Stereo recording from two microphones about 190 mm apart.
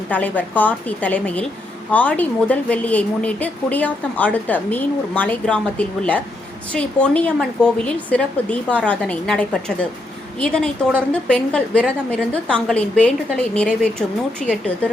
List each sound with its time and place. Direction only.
0.1 s a woman's voice: 10° left (ahead or behind)
14.4 s speech: 35° left (ahead or behind)